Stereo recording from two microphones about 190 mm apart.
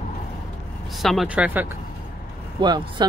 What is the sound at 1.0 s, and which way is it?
Speech, centre (ahead or behind).